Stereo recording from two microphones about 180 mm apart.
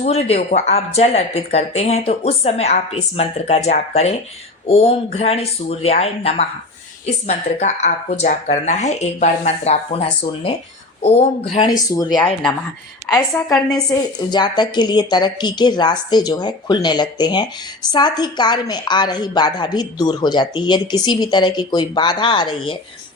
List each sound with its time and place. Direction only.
0.0 s speech: 35° left (ahead or behind)
11.9 s speech: 20° left (ahead or behind)
12.2 s a woman's voice: 5° left (ahead or behind)
14.3 s speech: 25° left (ahead or behind)